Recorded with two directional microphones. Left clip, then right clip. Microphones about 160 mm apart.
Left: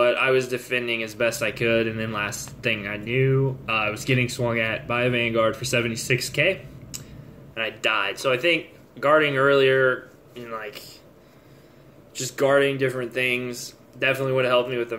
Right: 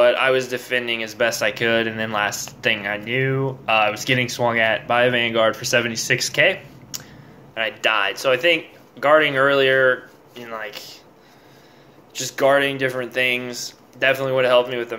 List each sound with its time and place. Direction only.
0.0 s speech: 20° left (ahead or behind)
12.1 s speech: 20° left (ahead or behind)